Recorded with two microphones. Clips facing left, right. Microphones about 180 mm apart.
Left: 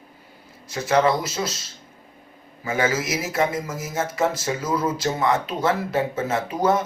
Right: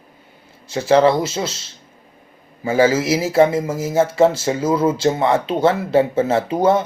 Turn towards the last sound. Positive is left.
turn(degrees=-30)  # may be behind; listen again after turning